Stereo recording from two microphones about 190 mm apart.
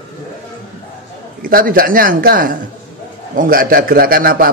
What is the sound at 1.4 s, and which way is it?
A man's voice, 50° right (ahead or behind).